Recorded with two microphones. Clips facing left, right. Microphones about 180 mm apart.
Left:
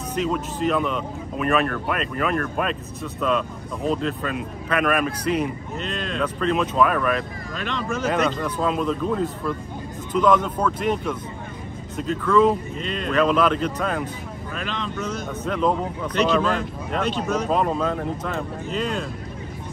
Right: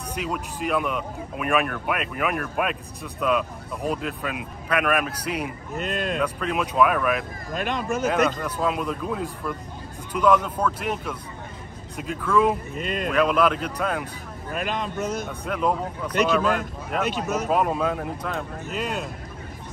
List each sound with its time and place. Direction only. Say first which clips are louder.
0.1 s speech: left 5 dB; 10° right (ahead or behind)
5.8 s speech: right 4 dB; 50° right (ahead or behind)
6.1 s speech: left 7 dB; 5° right (ahead or behind)
7.5 s speech: right 2 dB; 50° right (ahead or behind)
8.0 s speech: left 1 dB; 10° right (ahead or behind)
14.6 s speech: right 2 dB; 50° right (ahead or behind)
15.1 s speech: left 2 dB; 10° right (ahead or behind)